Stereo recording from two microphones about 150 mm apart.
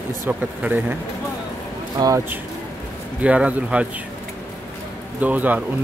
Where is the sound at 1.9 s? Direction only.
25° right (ahead or behind).